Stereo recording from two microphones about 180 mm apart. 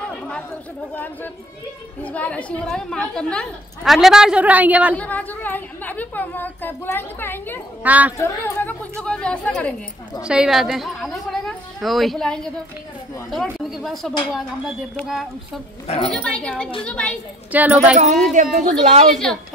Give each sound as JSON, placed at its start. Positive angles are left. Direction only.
{"t": 0.0, "sound": "chatter", "side_deg": 5}
{"t": 0.9, "sound": "a woman's voice", "side_deg": 10}
{"t": 4.9, "sound": "a woman's voice", "side_deg": 10}
{"t": 7.8, "sound": "a woman's voice", "side_deg": -10}
{"t": 8.2, "sound": "a woman's voice", "side_deg": 15}
{"t": 10.2, "sound": "a woman's voice", "side_deg": -5}
{"t": 17.5, "sound": "a woman's voice", "side_deg": -10}
{"t": 17.9, "sound": "speech", "side_deg": -40}